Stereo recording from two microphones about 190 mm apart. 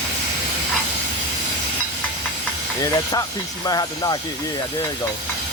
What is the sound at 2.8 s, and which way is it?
Speech, 20° left (ahead or behind).